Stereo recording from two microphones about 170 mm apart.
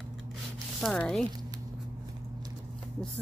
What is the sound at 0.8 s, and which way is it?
Speech, 5° left (ahead or behind).